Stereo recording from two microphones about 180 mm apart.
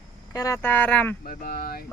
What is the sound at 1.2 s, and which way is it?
Speech, 55° left (ahead or behind).